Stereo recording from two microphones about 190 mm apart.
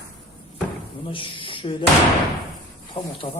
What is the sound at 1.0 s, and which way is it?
Speech, 25° left (ahead or behind).